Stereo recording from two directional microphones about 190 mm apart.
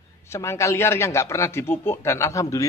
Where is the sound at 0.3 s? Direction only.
15° left (ahead or behind).